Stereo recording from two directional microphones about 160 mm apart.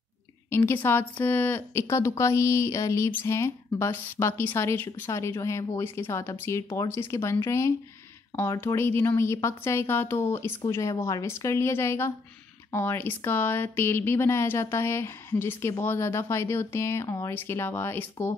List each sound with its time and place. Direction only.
0.5 s speech: 15° left (ahead or behind)